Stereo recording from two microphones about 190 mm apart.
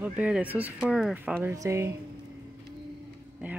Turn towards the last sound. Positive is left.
turn(degrees=-5)  # may be behind; listen again after turning